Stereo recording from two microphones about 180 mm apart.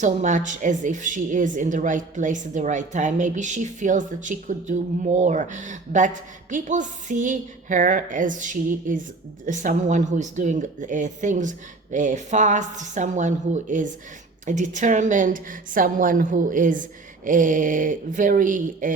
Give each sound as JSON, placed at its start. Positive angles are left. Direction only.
{"t": 0.0, "sound": "a woman's voice", "side_deg": -45}